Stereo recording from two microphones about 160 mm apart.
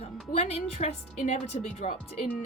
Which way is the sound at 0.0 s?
40° left (ahead or behind).